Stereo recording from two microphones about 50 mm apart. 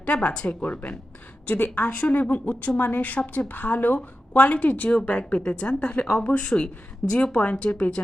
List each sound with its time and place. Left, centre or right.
0.0 s speech: left